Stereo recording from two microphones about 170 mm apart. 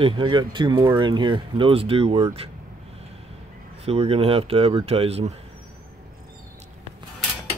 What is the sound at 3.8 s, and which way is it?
Speech, 35° right (ahead or behind).